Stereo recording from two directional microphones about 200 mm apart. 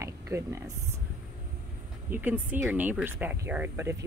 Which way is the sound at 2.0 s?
10° right (ahead or behind).